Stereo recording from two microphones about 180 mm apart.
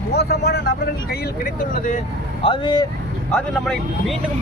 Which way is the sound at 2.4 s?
25° left (ahead or behind).